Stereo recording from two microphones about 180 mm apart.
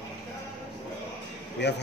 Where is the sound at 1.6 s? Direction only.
75° left (ahead or behind).